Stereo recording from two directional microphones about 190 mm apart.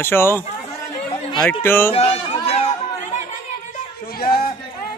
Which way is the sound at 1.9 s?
30° left (ahead or behind).